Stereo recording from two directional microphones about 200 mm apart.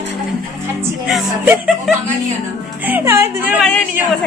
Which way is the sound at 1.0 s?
5° right (ahead or behind).